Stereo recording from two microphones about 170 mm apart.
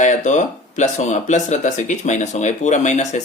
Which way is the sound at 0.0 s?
45° left (ahead or behind).